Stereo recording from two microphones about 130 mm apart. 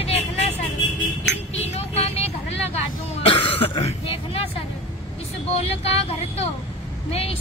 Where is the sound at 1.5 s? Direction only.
55° left (ahead or behind).